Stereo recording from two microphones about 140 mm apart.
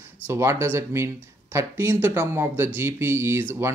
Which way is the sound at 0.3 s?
20° right (ahead or behind).